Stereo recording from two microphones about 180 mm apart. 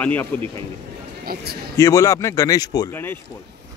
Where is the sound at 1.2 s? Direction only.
55° right (ahead or behind).